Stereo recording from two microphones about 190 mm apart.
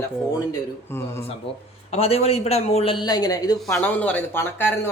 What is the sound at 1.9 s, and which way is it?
Speech, 30° left (ahead or behind).